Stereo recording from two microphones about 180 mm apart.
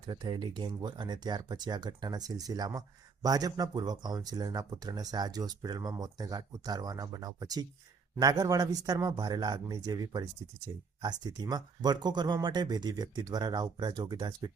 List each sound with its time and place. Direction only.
0.1 s speech: 25° right (ahead or behind)